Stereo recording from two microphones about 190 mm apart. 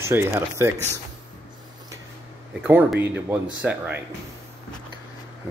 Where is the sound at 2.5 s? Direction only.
10° right (ahead or behind).